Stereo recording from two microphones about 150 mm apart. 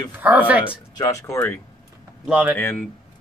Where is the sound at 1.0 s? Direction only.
20° left (ahead or behind).